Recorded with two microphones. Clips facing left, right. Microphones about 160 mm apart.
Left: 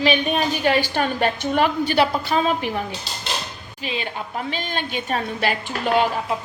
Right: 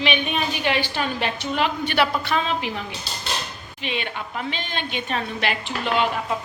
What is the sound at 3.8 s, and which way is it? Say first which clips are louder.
A woman's voice: left 1 dB; 35° left (ahead or behind).